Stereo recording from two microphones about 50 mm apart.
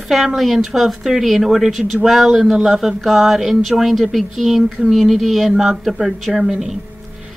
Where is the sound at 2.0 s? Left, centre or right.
Centre.